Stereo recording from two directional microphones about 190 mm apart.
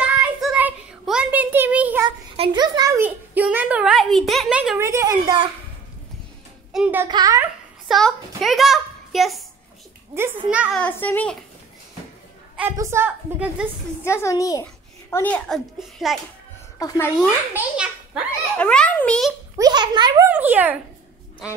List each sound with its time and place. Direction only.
0.0 s child singing: 5° right (ahead or behind)
2.0 s a sound: 25° right (ahead or behind)
6.7 s a child's voice: 5° right (ahead or behind)
7.1 s a child's voice: 20° right (ahead or behind)
7.9 s a child's voice: centre (ahead or behind)
10.1 s a woman's voice: 10° right (ahead or behind)
10.8 s a child's voice: 10° left (ahead or behind)
12.5 s a woman's voice: 10° right (ahead or behind)
14.0 s a child's voice: 15° left (ahead or behind); by 16.2 s centre (ahead or behind)
16.8 s a woman's voice: 20° left (ahead or behind)
17.6 s a child's voice: 5° right (ahead or behind)
18.6 s a child's voice: 5° left (ahead or behind)
19.5 s a child's voice: 20° right (ahead or behind)
20.2 s a woman's voice: 10° right (ahead or behind)